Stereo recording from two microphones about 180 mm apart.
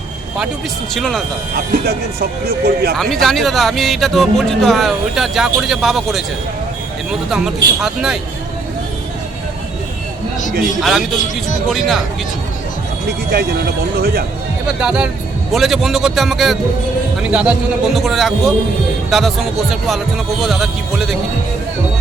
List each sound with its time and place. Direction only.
0.9 s speech: centre (ahead or behind)
1.5 s speech: 60° right (ahead or behind)
2.9 s speech: centre (ahead or behind)
10.8 s speech: centre (ahead or behind)
14.0 s speech: 60° right (ahead or behind)
14.7 s a man's voice: 5° right (ahead or behind)